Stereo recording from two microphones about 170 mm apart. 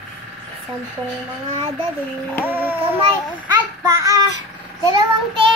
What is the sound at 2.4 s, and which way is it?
Music, 10° right (ahead or behind).